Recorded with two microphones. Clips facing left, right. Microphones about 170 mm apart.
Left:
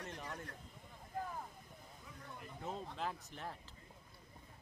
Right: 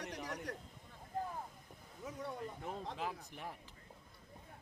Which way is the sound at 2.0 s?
80° right.